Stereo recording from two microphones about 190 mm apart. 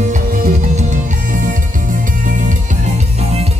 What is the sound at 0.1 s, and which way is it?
Music, 45° right (ahead or behind).